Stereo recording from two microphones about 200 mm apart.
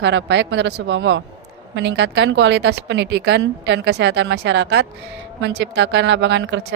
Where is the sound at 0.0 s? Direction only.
60° right (ahead or behind).